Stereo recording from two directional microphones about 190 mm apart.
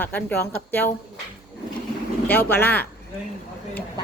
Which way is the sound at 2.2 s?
10° left (ahead or behind).